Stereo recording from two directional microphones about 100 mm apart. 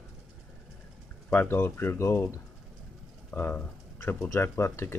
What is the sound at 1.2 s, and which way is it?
Speech, 20° left (ahead or behind).